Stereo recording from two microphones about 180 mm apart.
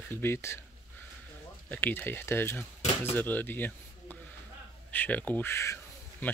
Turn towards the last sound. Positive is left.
turn(degrees=10)  # may be behind; listen again after turning